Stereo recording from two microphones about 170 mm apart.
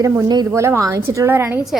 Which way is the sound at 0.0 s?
20° right (ahead or behind).